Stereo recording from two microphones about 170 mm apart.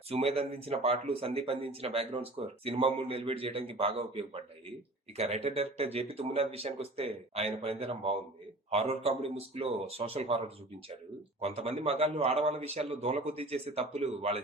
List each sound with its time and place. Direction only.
0.1 s speech: 35° right (ahead or behind)